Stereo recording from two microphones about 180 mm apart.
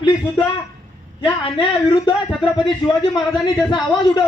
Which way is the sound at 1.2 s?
30° left (ahead or behind).